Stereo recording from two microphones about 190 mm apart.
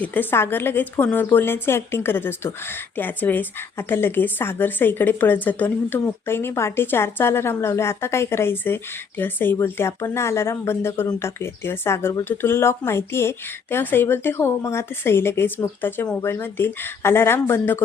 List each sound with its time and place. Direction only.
0.0 s speech: 10° left (ahead or behind)